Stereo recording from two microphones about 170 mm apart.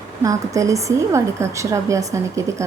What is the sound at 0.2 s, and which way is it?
A woman's voice, 20° right (ahead or behind).